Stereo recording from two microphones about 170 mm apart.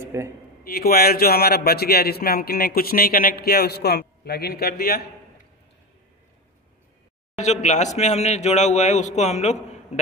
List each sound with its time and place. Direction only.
0.0 s a sound: 15° right (ahead or behind)
0.7 s speech: 65° left (ahead or behind)
7.3 s a man's voice: 45° left (ahead or behind)